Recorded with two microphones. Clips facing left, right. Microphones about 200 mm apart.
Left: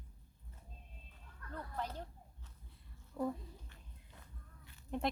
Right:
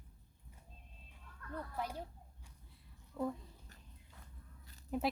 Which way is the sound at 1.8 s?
10° right (ahead or behind).